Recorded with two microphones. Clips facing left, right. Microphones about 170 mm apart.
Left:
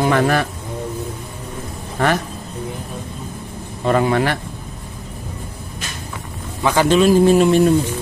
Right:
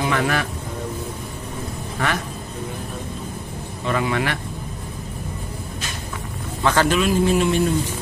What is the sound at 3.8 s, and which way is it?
Speech, 40° left (ahead or behind).